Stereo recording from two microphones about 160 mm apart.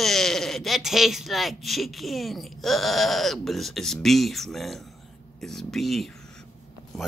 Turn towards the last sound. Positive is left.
turn(degrees=0)  # may be behind; listen again after turning